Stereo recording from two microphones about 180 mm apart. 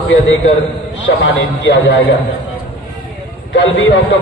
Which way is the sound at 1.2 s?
85° left.